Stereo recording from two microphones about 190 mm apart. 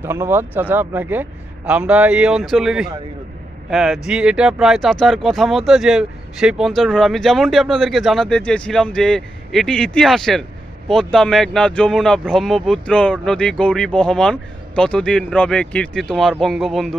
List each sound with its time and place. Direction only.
0.0 s speech: 10° right (ahead or behind)